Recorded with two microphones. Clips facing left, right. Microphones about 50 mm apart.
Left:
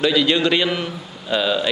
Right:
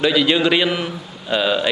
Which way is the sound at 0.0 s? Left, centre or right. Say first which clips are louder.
Right 1 dB; centre.